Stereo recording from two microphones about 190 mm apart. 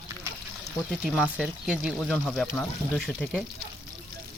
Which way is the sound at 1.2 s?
5° right (ahead or behind).